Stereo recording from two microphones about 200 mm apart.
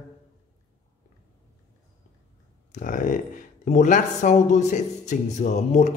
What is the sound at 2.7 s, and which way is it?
Speech, 40° left (ahead or behind).